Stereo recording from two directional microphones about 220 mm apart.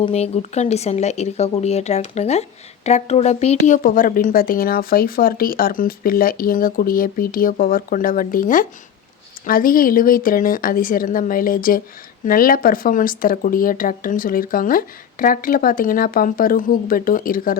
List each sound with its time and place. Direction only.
0.0 s speech: 30° left (ahead or behind)